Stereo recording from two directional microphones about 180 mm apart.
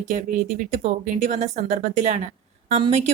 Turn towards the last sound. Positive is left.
turn(degrees=-35)  # may be behind; listen again after turning